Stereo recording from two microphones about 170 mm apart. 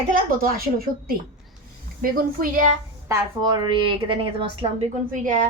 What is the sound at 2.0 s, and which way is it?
Speech, 50° right (ahead or behind).